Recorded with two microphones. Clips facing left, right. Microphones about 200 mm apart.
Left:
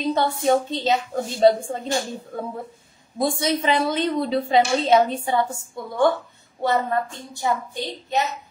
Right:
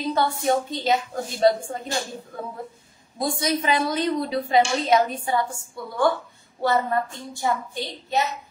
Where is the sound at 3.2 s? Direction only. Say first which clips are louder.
Left 2 dB; 25° left (ahead or behind).